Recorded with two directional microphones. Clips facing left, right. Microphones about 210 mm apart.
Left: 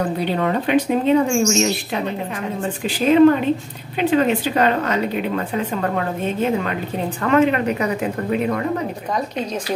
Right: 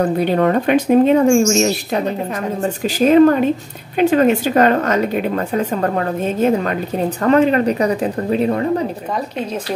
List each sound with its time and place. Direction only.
0.2 s speech: 50° right (ahead or behind); by 8.6 s 30° right (ahead or behind)